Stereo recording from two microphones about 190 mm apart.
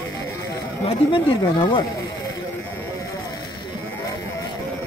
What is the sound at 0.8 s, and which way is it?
Speech, 25° left (ahead or behind).